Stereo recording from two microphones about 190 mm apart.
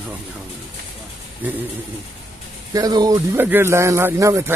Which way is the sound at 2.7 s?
20° right (ahead or behind).